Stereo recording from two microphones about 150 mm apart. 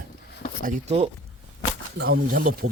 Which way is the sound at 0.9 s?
40° right (ahead or behind).